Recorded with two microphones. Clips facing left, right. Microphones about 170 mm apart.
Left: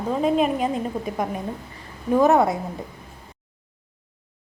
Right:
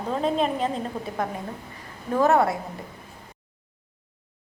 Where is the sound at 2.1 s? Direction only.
15° left (ahead or behind).